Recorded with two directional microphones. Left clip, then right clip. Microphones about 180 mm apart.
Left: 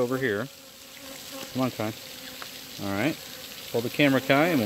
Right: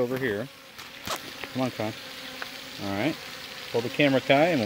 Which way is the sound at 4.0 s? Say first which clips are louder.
Right 1 dB; 40° left (ahead or behind).